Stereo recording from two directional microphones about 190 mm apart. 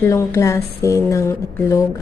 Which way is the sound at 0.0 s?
15° left (ahead or behind).